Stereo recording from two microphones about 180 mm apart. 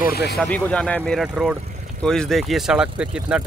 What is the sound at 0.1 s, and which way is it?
Speech, 60° left (ahead or behind).